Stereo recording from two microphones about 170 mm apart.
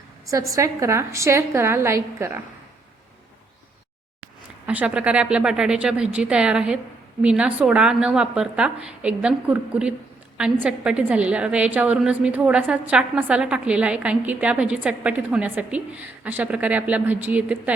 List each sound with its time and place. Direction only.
0.3 s a woman's voice: 20° right (ahead or behind)
4.6 s a woman's voice: 10° right (ahead or behind)